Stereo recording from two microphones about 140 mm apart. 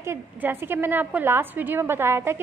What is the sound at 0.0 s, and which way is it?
A woman's voice, 15° right (ahead or behind).